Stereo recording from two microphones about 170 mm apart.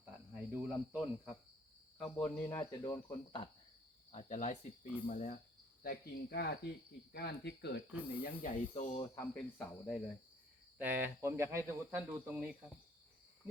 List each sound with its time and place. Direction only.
0.5 s speech: 5° right (ahead or behind); by 3.5 s 25° left (ahead or behind)
4.1 s speech: 45° left (ahead or behind)
5.8 s speech: 65° left (ahead or behind)
7.9 s speech: 10° right (ahead or behind)
8.2 s speech: 50° left (ahead or behind)
9.0 s speech: 15° left (ahead or behind)
10.8 s speech: 10° right (ahead or behind)